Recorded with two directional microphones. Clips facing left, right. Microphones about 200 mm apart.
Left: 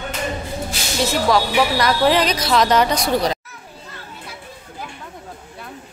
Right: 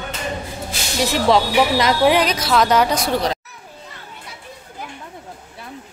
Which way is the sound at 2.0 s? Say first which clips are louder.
Even; 5° right (ahead or behind).